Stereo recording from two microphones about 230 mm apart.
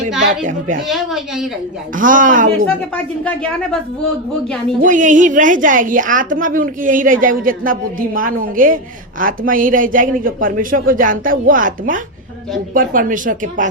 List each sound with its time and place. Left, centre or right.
0.9 s a woman's voice: centre
2.0 s a woman's voice: right
2.6 s a woman's voice: centre
4.8 s a woman's voice: right